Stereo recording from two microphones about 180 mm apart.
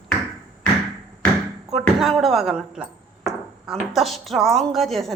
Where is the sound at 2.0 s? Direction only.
Centre (ahead or behind).